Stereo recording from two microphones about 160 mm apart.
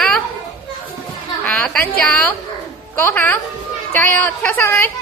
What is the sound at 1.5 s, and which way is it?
Speech, 5° left (ahead or behind).